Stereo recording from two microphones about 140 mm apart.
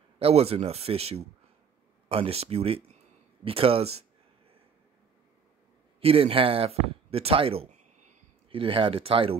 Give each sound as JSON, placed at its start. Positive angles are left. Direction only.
{"t": 0.2, "sound": "speech", "side_deg": -45}
{"t": 5.9, "sound": "speech", "side_deg": -40}
{"t": 8.5, "sound": "speech", "side_deg": -40}